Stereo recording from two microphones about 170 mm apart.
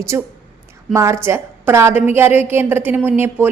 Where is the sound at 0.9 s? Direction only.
15° right (ahead or behind).